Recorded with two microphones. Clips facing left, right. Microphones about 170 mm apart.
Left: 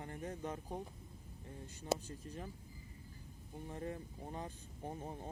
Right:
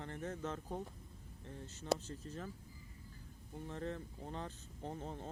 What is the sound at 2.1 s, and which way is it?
Speech, 15° left (ahead or behind).